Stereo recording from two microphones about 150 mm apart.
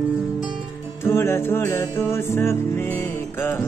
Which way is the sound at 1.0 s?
15° left (ahead or behind).